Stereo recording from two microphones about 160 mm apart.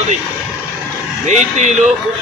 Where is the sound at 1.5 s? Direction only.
45° right (ahead or behind).